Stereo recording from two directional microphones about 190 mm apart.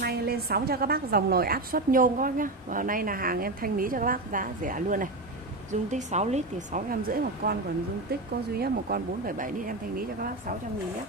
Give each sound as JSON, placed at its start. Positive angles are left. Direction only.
{"t": 0.0, "sound": "a woman's voice", "side_deg": -55}
{"t": 8.5, "sound": "a woman's voice", "side_deg": -50}